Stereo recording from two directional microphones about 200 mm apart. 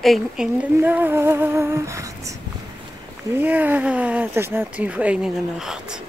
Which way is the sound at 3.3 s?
10° right (ahead or behind).